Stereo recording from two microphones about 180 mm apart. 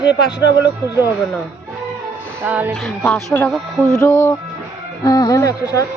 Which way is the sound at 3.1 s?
10° left (ahead or behind).